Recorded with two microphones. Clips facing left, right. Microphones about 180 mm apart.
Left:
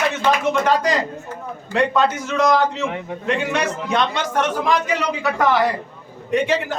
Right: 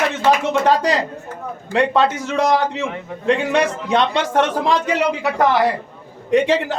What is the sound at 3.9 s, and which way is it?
Speech, 25° right (ahead or behind).